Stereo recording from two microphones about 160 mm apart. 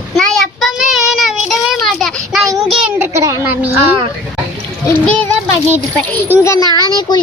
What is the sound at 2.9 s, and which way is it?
Speech, 15° right (ahead or behind).